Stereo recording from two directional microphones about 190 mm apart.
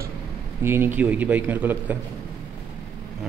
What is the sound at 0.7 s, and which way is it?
Speech, 10° right (ahead or behind).